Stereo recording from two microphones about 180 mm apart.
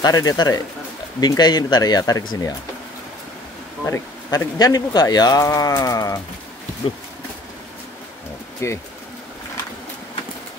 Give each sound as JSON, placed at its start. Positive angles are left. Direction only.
{"t": 0.0, "sound": "speech", "side_deg": 20}
{"t": 3.8, "sound": "speech", "side_deg": 20}
{"t": 8.6, "sound": "speech", "side_deg": 15}